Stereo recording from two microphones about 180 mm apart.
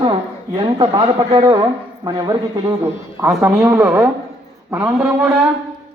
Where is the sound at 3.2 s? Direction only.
15° right (ahead or behind).